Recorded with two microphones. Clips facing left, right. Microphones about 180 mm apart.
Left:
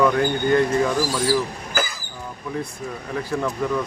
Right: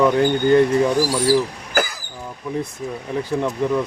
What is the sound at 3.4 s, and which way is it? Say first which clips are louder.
Speech: right 3 dB; 20° right (ahead or behind).